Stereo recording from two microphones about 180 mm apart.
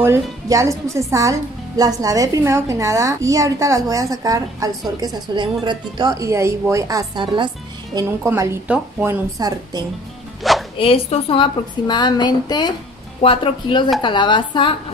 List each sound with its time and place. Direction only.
0.0 s a woman's voice: 15° right (ahead or behind)
10.4 s music: centre (ahead or behind)
10.8 s a woman's voice: 30° left (ahead or behind)